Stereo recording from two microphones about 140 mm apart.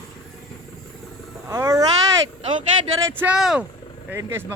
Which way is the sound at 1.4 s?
20° right (ahead or behind).